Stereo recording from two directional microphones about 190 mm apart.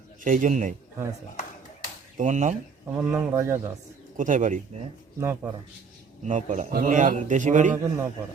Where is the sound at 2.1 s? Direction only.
40° right (ahead or behind).